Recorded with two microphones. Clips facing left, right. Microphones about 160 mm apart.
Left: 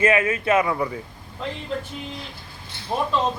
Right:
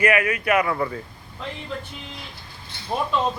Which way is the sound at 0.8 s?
10° left (ahead or behind).